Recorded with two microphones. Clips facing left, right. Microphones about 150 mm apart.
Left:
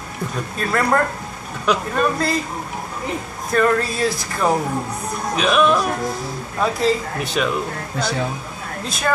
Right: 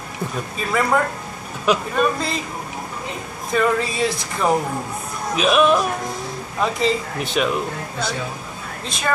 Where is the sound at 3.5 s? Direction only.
Centre (ahead or behind).